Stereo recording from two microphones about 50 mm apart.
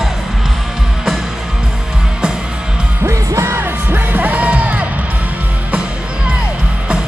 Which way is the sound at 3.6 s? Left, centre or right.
Right.